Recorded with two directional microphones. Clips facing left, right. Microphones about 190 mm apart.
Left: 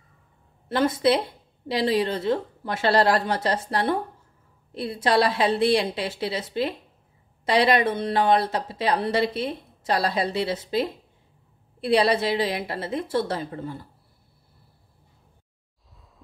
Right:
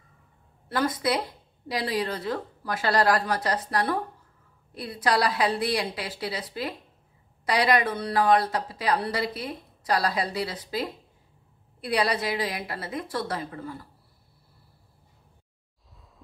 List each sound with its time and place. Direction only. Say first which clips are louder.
0.7 s a woman's voice: left 5 dB; 25° left (ahead or behind)